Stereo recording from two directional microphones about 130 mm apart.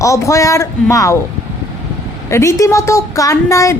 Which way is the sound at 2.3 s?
20° left (ahead or behind).